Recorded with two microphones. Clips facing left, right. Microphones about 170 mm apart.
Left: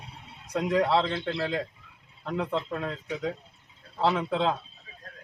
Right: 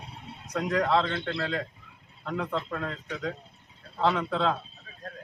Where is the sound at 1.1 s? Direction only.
15° left (ahead or behind).